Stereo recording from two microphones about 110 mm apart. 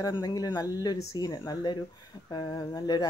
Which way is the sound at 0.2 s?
35° left (ahead or behind).